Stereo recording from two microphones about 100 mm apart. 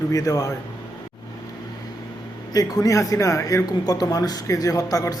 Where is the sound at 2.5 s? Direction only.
35° left (ahead or behind).